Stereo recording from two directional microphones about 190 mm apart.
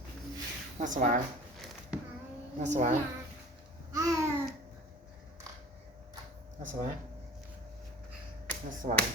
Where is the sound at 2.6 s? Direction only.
40° right (ahead or behind).